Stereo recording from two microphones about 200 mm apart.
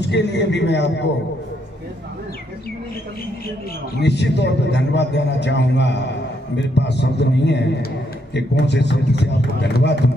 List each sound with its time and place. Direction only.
0.0 s a man's voice: 60° left (ahead or behind)
3.9 s a man's voice: 60° left (ahead or behind)